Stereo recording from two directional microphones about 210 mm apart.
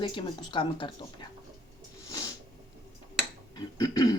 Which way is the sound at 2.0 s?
15° left (ahead or behind).